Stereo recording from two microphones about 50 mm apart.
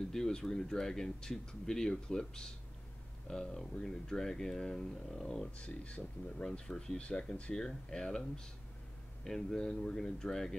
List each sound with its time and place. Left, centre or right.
0.1 s speech: centre
5.6 s speech: left